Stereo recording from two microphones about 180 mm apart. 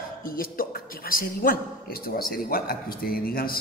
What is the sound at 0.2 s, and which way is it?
A man's voice, 50° left (ahead or behind).